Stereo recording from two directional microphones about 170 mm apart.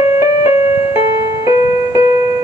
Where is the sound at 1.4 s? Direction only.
20° right (ahead or behind).